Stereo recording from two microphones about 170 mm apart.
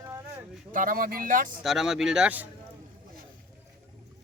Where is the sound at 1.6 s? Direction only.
Centre (ahead or behind).